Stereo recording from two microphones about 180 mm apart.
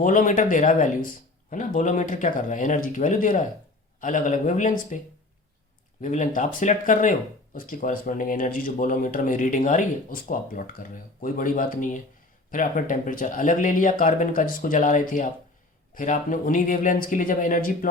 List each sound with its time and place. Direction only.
0.0 s speech: 45° left (ahead or behind)